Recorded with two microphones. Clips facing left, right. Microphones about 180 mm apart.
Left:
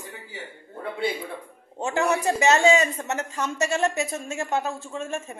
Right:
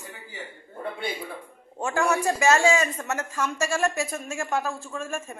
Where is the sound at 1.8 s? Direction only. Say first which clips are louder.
Left 1 dB; 20° left (ahead or behind).